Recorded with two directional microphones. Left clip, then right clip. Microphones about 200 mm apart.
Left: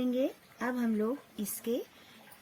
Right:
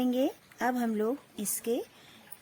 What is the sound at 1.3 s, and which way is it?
Speech, 30° right (ahead or behind).